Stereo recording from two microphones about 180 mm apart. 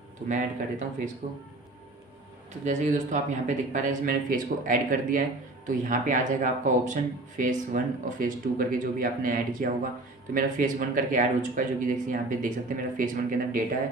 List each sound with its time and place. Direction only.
0.3 s speech: 45° right (ahead or behind)
2.6 s speech: 40° right (ahead or behind)